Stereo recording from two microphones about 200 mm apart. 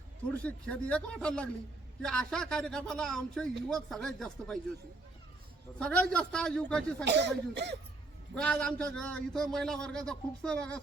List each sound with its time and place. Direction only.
0.4 s a man's voice: 5° left (ahead or behind)
5.8 s a man's voice: 5° left (ahead or behind)
7.0 s speech: 60° right (ahead or behind)
8.4 s a man's voice: 5° left (ahead or behind)